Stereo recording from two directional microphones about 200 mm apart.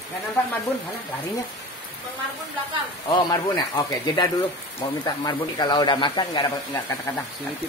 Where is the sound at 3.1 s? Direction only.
20° left (ahead or behind).